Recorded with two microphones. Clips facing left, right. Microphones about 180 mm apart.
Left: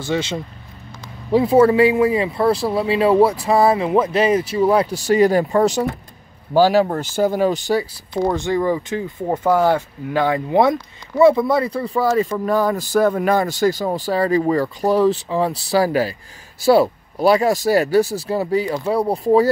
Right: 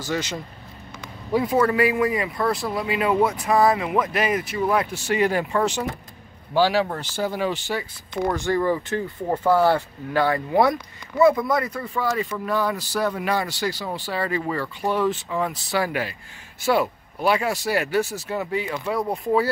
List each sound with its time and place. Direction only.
0.0 s speech: 25° left (ahead or behind)
8.3 s speech: 20° left (ahead or behind); by 19.5 s 40° left (ahead or behind)